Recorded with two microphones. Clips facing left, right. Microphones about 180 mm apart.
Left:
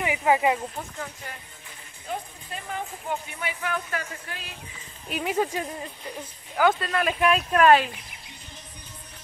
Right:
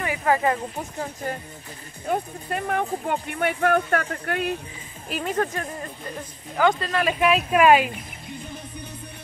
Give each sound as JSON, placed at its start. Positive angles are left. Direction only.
{"t": 0.0, "sound": "speech", "side_deg": 15}
{"t": 0.9, "sound": "speech", "side_deg": -40}
{"t": 2.0, "sound": "speech", "side_deg": -60}
{"t": 5.1, "sound": "speech", "side_deg": 5}